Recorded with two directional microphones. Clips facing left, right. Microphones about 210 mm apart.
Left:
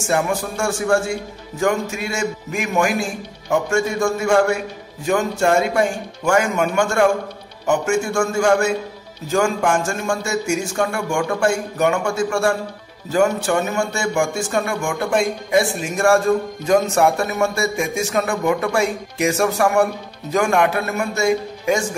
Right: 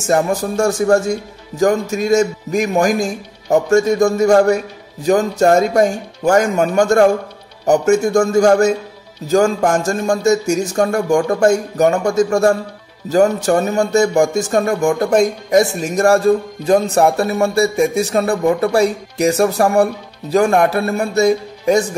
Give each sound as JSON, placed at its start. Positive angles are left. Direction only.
{"t": 0.0, "sound": "speech", "side_deg": -40}